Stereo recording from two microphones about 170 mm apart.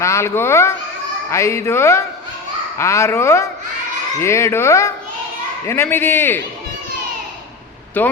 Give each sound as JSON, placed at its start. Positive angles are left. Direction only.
{"t": 0.0, "sound": "a man's voice", "side_deg": 15}
{"t": 8.0, "sound": "a man's voice", "side_deg": 10}